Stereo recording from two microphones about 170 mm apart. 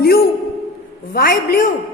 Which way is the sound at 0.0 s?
65° left (ahead or behind).